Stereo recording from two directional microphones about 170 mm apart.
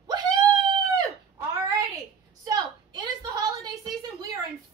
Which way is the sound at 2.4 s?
25° right (ahead or behind).